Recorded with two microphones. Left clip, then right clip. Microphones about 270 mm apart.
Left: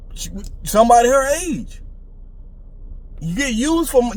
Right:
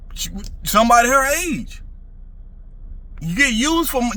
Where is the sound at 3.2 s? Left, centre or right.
Centre.